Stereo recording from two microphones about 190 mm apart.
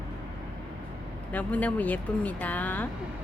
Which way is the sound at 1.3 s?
10° left (ahead or behind).